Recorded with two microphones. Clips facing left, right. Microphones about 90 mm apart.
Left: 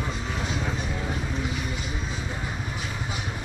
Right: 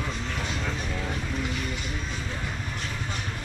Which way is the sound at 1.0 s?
5° left (ahead or behind).